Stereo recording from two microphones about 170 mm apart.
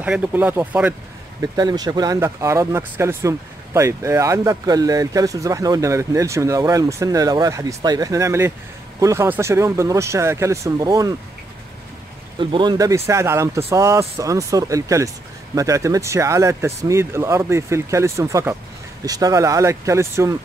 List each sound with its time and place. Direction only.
0.0 s speech: 10° right (ahead or behind)
1.4 s speech: 25° right (ahead or behind)
12.4 s speech: 30° right (ahead or behind)